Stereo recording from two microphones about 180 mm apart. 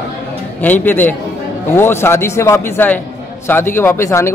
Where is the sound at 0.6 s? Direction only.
10° left (ahead or behind).